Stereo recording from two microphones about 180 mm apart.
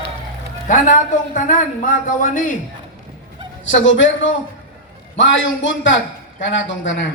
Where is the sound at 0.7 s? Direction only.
45° left (ahead or behind).